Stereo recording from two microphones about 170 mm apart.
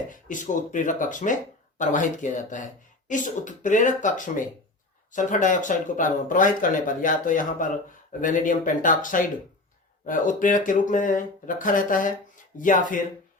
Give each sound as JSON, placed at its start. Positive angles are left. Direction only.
{"t": 0.1, "sound": "speech", "side_deg": 50}